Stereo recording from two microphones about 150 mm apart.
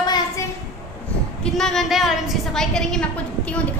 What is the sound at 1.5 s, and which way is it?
A woman's voice, centre (ahead or behind).